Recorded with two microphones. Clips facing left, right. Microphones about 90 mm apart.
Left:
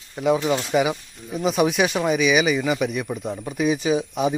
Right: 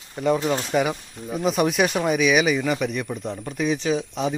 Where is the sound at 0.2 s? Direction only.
5° left (ahead or behind).